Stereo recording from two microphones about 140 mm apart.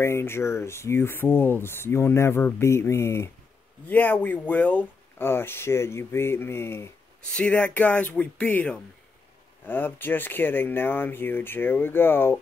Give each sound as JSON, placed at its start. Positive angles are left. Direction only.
{"t": 0.0, "sound": "speech", "side_deg": 20}
{"t": 7.2, "sound": "speech", "side_deg": 5}